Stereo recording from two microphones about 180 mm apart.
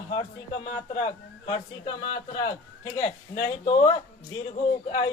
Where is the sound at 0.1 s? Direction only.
25° left (ahead or behind).